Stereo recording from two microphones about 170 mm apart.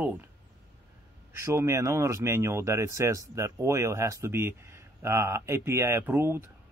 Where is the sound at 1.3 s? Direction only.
15° right (ahead or behind).